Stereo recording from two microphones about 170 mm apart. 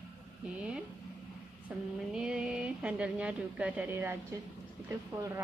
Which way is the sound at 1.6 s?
5° right (ahead or behind).